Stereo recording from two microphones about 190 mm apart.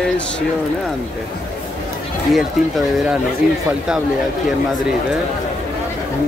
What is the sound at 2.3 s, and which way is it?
Speech, centre (ahead or behind).